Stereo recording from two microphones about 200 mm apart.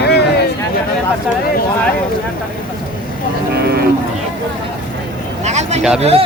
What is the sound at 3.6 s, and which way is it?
Livestock, 50° right (ahead or behind).